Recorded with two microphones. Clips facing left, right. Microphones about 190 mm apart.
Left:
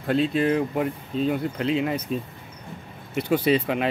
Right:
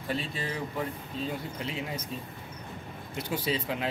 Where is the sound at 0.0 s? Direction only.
65° left (ahead or behind).